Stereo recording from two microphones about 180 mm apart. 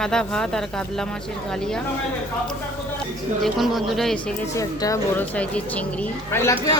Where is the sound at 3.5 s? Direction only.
Centre (ahead or behind).